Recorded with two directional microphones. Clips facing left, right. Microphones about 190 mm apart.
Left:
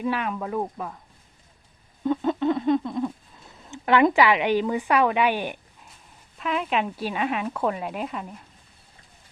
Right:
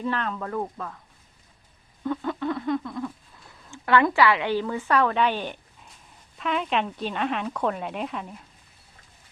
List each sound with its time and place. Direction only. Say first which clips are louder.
0.0 s speech: left 2 dB; 10° left (ahead or behind)
2.0 s a sound: left 5 dB; 20° left (ahead or behind)
3.5 s speech: left 1 dB; 20° left (ahead or behind); by 8.4 s centre (ahead or behind)